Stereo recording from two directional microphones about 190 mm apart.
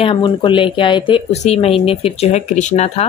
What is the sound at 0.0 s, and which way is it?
Speech, 25° left (ahead or behind).